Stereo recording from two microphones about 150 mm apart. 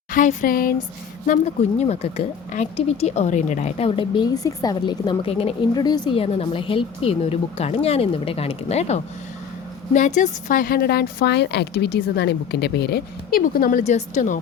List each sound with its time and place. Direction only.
0.1 s a woman's voice: 60° left (ahead or behind)
1.8 s speech: 45° left (ahead or behind)
5.7 s a woman's voice: 25° left (ahead or behind); by 9.0 s 45° left (ahead or behind)
9.9 s a woman's voice: 55° left (ahead or behind); by 13.8 s 70° left (ahead or behind)
13.8 s speech: 50° left (ahead or behind)